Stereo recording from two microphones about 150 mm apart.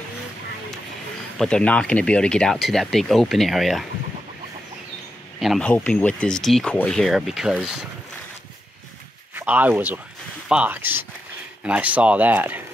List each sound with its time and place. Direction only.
1.4 s speech: 5° left (ahead or behind)
5.4 s speech: centre (ahead or behind)
9.3 s speech: 15° right (ahead or behind)